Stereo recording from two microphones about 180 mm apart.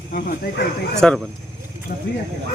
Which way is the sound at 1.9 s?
40° left (ahead or behind).